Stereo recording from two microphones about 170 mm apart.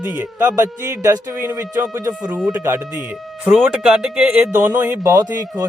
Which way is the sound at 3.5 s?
Centre (ahead or behind).